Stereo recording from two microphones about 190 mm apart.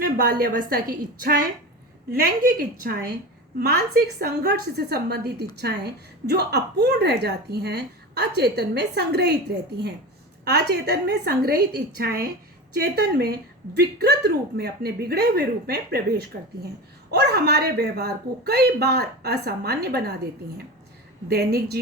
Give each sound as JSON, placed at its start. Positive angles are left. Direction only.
{"t": 0.0, "sound": "a woman's voice", "side_deg": -50}
{"t": 2.8, "sound": "a woman's voice", "side_deg": -55}
{"t": 21.2, "sound": "a woman's voice", "side_deg": -55}